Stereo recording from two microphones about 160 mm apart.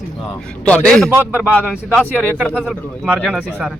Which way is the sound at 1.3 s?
10° right (ahead or behind).